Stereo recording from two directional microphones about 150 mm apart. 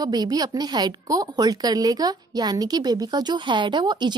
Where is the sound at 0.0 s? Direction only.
25° right (ahead or behind).